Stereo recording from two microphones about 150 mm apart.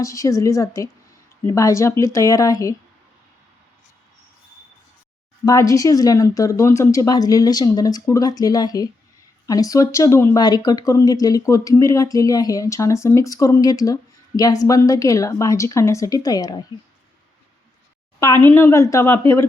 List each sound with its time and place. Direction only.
0.0 s speech: 20° left (ahead or behind)
5.5 s speech: 20° left (ahead or behind)
18.5 s speech: 15° left (ahead or behind)